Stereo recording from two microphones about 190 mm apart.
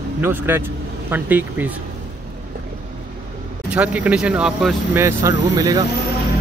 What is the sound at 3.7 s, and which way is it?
Speech, 5° right (ahead or behind).